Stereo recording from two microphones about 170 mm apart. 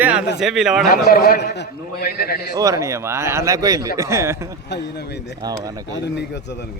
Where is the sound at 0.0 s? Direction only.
5° right (ahead or behind).